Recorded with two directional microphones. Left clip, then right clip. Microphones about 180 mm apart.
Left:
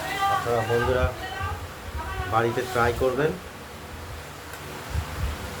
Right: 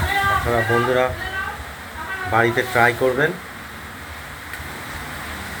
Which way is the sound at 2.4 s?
15° right (ahead or behind).